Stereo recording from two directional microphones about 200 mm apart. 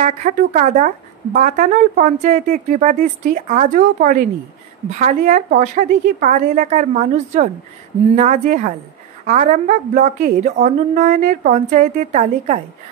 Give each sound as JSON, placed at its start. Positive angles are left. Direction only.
{"t": 0.0, "sound": "speech", "side_deg": -40}